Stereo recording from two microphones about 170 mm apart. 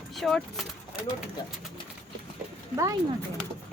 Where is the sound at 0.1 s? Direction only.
Centre (ahead or behind).